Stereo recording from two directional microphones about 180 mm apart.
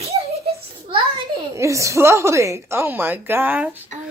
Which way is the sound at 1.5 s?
15° right (ahead or behind).